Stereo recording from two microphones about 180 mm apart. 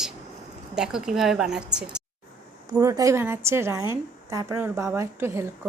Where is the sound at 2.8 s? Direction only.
20° right (ahead or behind).